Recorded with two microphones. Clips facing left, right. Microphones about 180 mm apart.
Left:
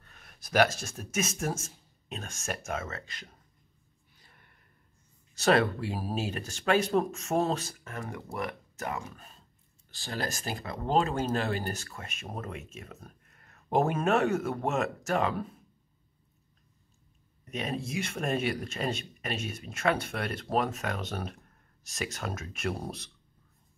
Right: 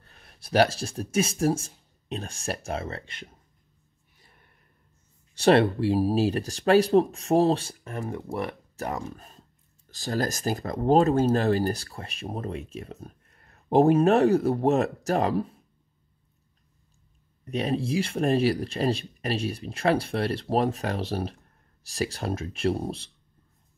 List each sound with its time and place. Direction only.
0.0 s speech: 30° right (ahead or behind)
5.3 s speech: 30° right (ahead or behind)
17.5 s speech: 35° right (ahead or behind)